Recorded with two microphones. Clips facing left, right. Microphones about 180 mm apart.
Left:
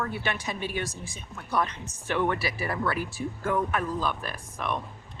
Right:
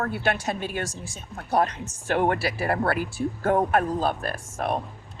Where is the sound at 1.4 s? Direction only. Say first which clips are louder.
Right 5 dB; 40° right (ahead or behind).